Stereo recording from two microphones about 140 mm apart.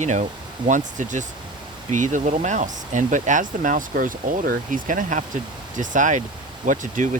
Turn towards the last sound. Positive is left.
turn(degrees=-65)  # may be behind; listen again after turning